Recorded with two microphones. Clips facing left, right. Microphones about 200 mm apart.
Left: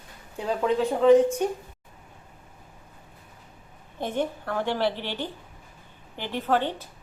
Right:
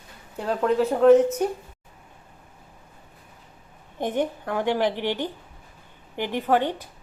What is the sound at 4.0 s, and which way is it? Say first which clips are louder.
A woman's voice: right 3 dB; 15° right (ahead or behind).